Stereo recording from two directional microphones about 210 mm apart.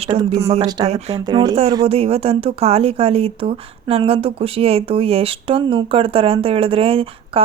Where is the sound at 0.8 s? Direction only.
30° right (ahead or behind).